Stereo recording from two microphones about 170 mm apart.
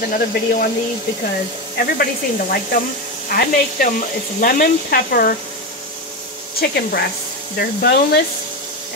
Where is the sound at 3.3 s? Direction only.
55° left (ahead or behind).